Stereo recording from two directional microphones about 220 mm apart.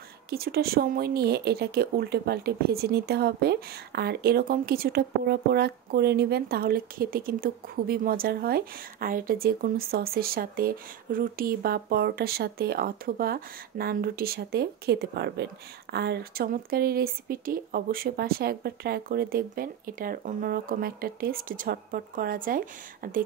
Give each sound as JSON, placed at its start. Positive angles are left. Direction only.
{"t": 0.3, "sound": "speech", "side_deg": -45}